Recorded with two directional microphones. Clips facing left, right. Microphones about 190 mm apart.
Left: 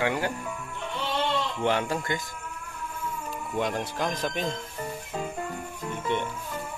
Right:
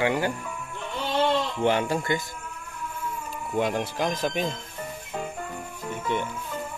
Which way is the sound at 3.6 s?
5° right (ahead or behind).